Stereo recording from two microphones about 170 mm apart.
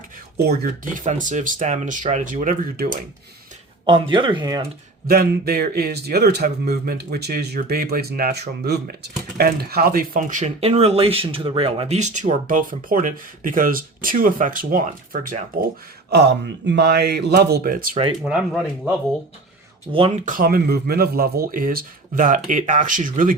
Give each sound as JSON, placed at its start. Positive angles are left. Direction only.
{"t": 0.3, "sound": "speech", "side_deg": -60}
{"t": 3.8, "sound": "speech", "side_deg": -30}
{"t": 5.0, "sound": "speech", "side_deg": -60}
{"t": 9.4, "sound": "speech", "side_deg": -65}
{"t": 16.0, "sound": "speech", "side_deg": -75}
{"t": 18.3, "sound": "speech", "side_deg": -5}
{"t": 19.9, "sound": "speech", "side_deg": -35}